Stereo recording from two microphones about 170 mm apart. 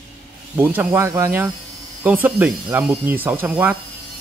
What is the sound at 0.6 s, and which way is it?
A man's voice, 10° right (ahead or behind).